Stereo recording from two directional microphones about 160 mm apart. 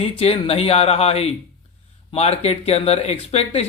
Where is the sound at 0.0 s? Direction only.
35° left (ahead or behind).